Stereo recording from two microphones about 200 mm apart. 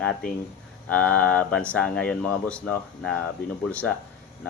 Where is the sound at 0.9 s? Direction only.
5° left (ahead or behind).